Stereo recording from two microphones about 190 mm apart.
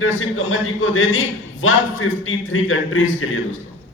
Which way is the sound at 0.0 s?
90° left.